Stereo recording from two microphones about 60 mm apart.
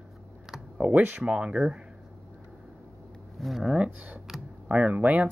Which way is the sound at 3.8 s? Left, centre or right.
Right.